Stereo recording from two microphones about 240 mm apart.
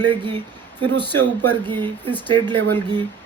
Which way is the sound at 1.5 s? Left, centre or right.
Centre.